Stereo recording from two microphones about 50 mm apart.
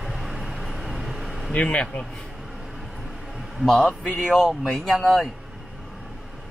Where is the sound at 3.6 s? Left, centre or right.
Centre.